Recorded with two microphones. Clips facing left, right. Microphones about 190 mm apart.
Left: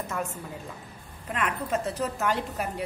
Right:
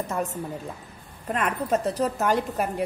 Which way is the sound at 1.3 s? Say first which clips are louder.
Right 4 dB; 40° right (ahead or behind).